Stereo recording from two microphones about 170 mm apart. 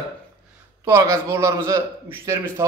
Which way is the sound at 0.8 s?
15° right (ahead or behind).